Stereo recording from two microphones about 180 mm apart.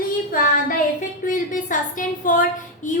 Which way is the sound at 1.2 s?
50° left (ahead or behind).